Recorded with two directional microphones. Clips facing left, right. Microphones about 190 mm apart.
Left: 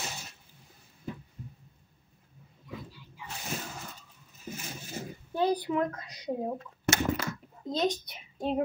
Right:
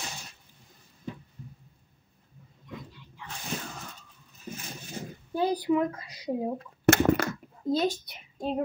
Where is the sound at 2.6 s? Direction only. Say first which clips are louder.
Even; 5° left (ahead or behind).